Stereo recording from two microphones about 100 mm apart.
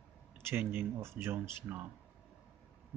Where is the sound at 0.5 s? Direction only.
20° right (ahead or behind).